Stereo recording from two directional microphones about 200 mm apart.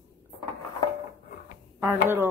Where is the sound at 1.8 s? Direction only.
10° right (ahead or behind).